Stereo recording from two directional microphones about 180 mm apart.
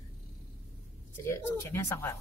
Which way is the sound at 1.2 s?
15° left (ahead or behind).